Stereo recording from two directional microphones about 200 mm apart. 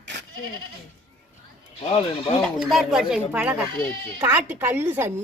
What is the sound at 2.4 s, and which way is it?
A woman's voice, centre (ahead or behind).